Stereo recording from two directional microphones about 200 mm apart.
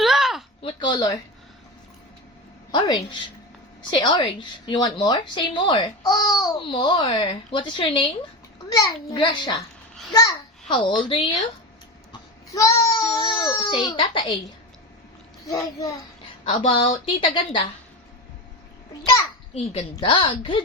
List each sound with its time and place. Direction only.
0.0 s a sound: centre (ahead or behind)
0.6 s a sound: 20° left (ahead or behind)
2.7 s a woman's voice: 20° left (ahead or behind)
12.5 s a woman's voice: 15° left (ahead or behind)
15.4 s a woman's voice: 20° left (ahead or behind)
19.5 s a woman's voice: 25° left (ahead or behind)